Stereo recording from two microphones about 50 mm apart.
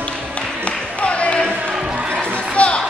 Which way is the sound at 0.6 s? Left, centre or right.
Left.